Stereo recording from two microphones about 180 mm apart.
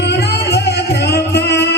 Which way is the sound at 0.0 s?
70° left (ahead or behind).